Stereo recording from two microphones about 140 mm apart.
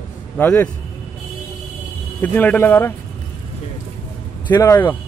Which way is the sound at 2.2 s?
10° left (ahead or behind).